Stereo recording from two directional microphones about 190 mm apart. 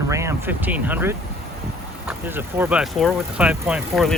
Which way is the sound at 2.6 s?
5° right (ahead or behind).